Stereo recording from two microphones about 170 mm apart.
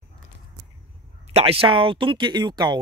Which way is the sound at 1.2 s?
35° right (ahead or behind).